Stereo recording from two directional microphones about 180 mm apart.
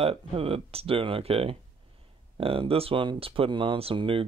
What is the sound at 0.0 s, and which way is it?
Speech, 30° right (ahead or behind).